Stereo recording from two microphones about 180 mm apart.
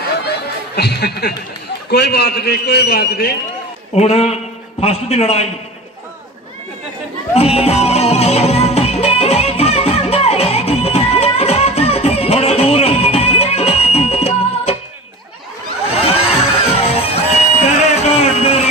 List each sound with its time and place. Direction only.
0.7 s a man's voice: 65° left (ahead or behind)
3.9 s a man's voice: 35° left (ahead or behind)
7.3 s music: 35° left (ahead or behind)
15.9 s a sound: 35° left (ahead or behind)
16.7 s music: 35° left (ahead or behind)
17.6 s a sound: 35° left (ahead or behind)